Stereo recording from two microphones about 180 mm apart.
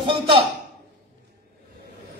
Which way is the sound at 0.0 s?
30° right (ahead or behind).